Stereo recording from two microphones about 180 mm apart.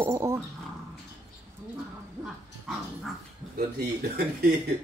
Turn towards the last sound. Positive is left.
turn(degrees=-60)  # may be behind; listen again after turning